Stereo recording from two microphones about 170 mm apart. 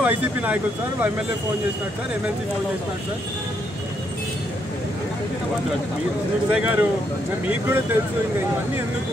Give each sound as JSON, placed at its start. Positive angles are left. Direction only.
{"t": 0.0, "sound": "speech", "side_deg": -10}
{"t": 6.5, "sound": "speech", "side_deg": -10}